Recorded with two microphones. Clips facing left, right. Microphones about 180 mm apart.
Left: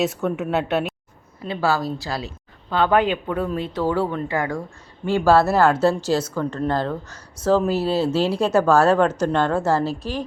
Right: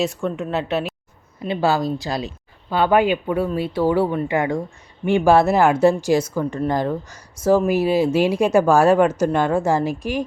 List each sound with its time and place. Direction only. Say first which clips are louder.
0.0 s speech: even; 5° left (ahead or behind)
1.4 s speech: right 3 dB; 20° right (ahead or behind)